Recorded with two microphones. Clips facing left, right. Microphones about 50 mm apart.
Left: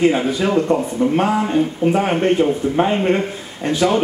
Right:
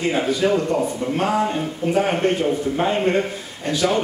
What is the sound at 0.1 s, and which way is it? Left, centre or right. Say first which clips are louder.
A man's voice: left 2 dB; left.